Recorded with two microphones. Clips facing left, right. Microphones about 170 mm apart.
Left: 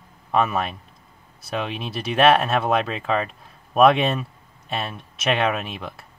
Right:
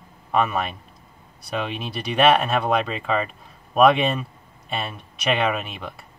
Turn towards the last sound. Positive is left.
turn(degrees=0)  # may be behind; listen again after turning